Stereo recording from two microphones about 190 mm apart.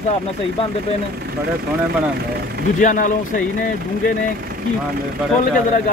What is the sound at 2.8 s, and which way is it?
Speech, 45° left (ahead or behind).